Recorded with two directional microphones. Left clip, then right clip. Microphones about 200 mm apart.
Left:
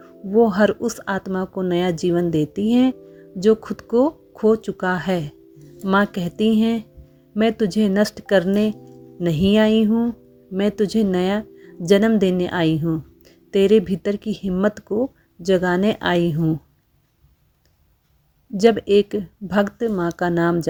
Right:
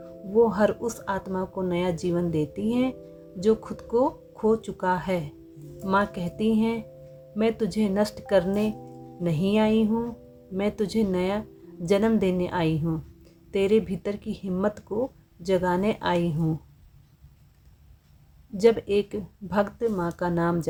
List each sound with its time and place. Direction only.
0.4 s speech: 30° left (ahead or behind)
18.5 s speech: 30° left (ahead or behind)